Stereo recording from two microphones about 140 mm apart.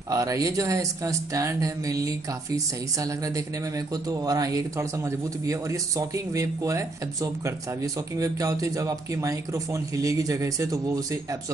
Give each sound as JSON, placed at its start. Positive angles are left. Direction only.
{"t": 0.1, "sound": "speech", "side_deg": -25}